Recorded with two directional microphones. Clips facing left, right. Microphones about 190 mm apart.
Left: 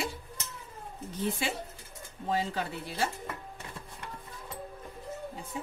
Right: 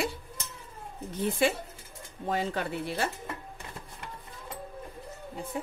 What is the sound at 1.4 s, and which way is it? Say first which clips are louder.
A woman's voice: right 7 dB; 55° right (ahead or behind).